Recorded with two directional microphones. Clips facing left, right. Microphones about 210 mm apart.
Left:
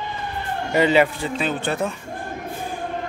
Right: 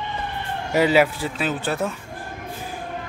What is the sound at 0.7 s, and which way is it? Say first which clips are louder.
Speech: even; 5° right (ahead or behind).